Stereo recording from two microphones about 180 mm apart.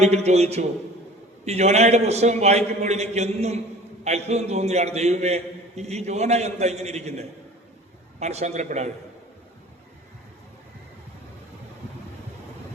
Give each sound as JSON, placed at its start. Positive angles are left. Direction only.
{"t": 0.0, "sound": "a man's voice", "side_deg": -35}